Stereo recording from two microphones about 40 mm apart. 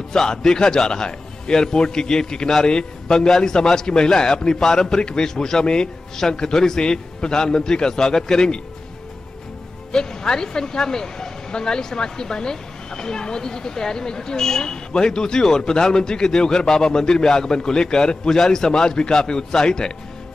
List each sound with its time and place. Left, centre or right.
0.1 s a man's voice: centre
9.9 s a man's voice: centre